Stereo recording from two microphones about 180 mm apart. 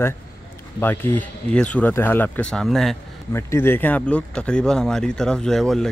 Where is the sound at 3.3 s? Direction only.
15° left (ahead or behind).